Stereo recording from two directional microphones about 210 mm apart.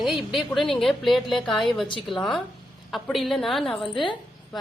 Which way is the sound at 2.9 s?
Centre (ahead or behind).